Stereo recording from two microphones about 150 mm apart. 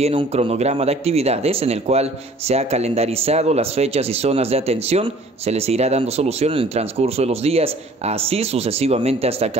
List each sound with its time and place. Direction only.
0.0 s speech: 45° right (ahead or behind)